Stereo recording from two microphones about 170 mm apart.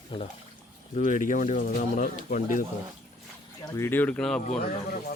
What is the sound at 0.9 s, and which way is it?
Speech, 45° left (ahead or behind).